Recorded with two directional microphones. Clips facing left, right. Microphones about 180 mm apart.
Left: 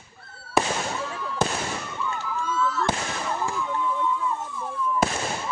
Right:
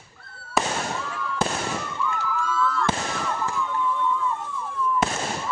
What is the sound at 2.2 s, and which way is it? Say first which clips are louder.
Police car: even; 25° left (ahead or behind).